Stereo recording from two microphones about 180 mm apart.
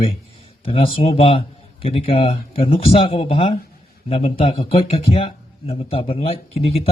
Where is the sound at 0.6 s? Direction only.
30° left (ahead or behind).